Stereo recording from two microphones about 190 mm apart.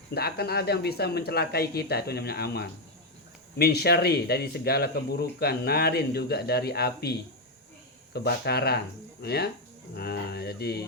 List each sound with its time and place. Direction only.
0.1 s speech: 55° left (ahead or behind)